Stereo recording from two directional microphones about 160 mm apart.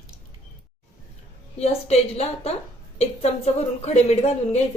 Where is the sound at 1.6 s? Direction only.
40° left (ahead or behind).